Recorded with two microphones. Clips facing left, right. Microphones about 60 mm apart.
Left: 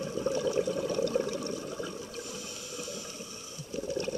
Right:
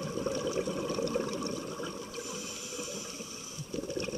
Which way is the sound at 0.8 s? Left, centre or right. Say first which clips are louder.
Left 3 dB; right.